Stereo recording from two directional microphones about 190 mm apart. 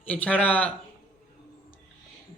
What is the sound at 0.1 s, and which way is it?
Speech, 10° left (ahead or behind).